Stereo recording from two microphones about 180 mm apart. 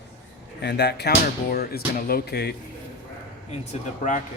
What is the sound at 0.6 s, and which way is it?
Speech, 65° left (ahead or behind).